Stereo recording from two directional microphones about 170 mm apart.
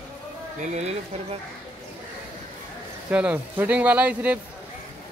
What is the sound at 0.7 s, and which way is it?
Speech, 40° right (ahead or behind).